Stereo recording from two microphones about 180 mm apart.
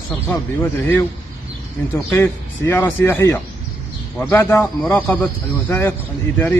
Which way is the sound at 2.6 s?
15° left (ahead or behind).